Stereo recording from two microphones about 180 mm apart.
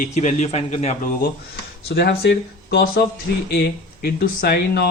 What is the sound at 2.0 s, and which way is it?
Speech, 65° left (ahead or behind).